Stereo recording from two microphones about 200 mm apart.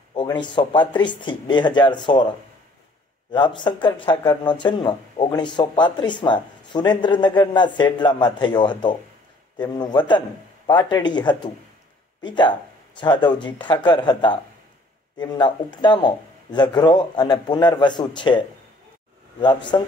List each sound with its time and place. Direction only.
0.1 s speech: 20° left (ahead or behind)
19.4 s speech: 20° left (ahead or behind)